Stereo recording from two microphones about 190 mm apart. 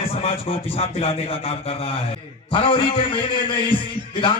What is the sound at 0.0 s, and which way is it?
A man's voice, 30° left (ahead or behind).